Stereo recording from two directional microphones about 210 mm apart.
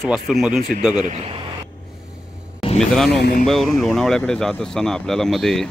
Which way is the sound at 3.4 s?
Centre (ahead or behind).